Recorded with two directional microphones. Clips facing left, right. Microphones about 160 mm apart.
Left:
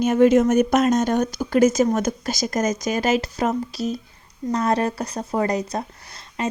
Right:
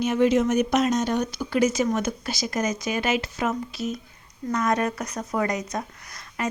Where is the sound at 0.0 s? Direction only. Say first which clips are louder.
Left 5 dB; 50° left (ahead or behind).